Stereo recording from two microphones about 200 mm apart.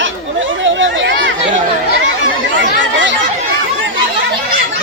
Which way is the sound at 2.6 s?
65° right (ahead or behind).